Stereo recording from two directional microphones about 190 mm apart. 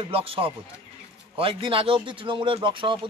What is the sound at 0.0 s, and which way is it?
Speech, 30° right (ahead or behind).